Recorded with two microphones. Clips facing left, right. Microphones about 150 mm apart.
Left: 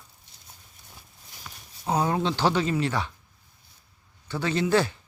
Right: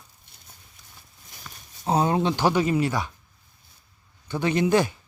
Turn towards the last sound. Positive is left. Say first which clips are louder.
# right 2 dB
turn(degrees=-15)  # may be behind; listen again after turning